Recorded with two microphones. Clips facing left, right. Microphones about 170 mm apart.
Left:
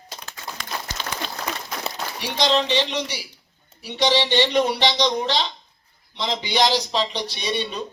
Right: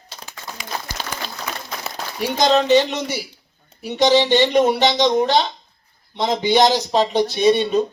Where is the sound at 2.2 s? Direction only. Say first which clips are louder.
Right 5 dB; 45° right (ahead or behind).